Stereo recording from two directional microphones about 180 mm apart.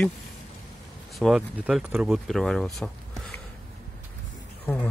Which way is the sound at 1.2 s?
Centre (ahead or behind).